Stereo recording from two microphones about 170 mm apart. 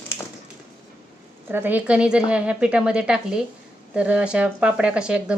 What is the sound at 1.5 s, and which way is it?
A woman's voice, 10° right (ahead or behind).